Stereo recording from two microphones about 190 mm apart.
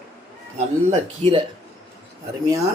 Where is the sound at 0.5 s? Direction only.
30° right (ahead or behind).